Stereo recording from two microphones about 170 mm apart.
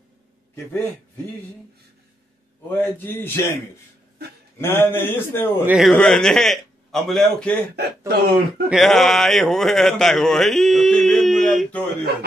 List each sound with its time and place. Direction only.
2.7 s a man's voice: 10° left (ahead or behind)
4.6 s a man's voice: 15° left (ahead or behind)
5.7 s a man's voice: centre (ahead or behind)
7.8 s speech: 75° right (ahead or behind)
8.6 s speech: centre (ahead or behind)